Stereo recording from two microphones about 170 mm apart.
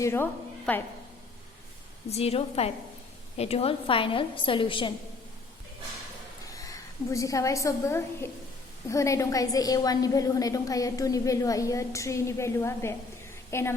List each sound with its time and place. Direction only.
0.0 s a woman's voice: 15° left (ahead or behind)
2.0 s a woman's voice: 35° left (ahead or behind)
6.4 s a woman's voice: 20° left (ahead or behind)